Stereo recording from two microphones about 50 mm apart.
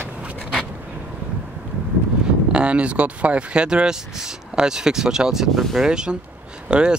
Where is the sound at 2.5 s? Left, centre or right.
Right; by 5.7 s centre.